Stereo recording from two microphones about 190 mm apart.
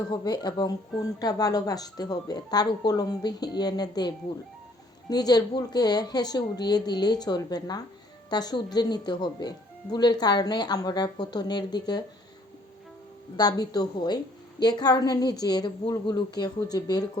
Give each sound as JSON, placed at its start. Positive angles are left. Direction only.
{"t": 0.1, "sound": "speech", "side_deg": 20}
{"t": 13.3, "sound": "speech", "side_deg": 20}